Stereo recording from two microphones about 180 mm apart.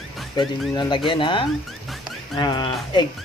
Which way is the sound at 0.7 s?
25° left (ahead or behind).